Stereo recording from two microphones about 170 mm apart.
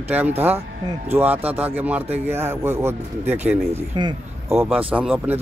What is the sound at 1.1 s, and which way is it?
Speech, 10° right (ahead or behind).